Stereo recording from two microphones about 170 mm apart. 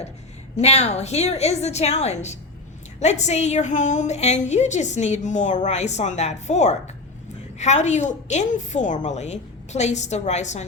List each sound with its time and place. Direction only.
0.5 s a woman's voice: 40° left (ahead or behind)